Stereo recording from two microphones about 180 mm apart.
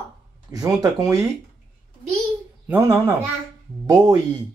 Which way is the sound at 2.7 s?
15° right (ahead or behind).